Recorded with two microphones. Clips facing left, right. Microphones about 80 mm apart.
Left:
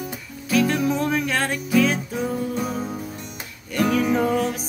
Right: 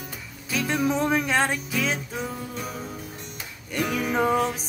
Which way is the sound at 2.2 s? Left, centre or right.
Centre.